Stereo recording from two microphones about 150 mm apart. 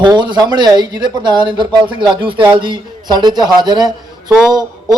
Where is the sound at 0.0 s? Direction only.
30° right (ahead or behind).